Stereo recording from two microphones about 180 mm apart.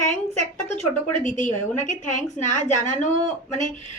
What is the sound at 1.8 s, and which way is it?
Speech, 45° left (ahead or behind).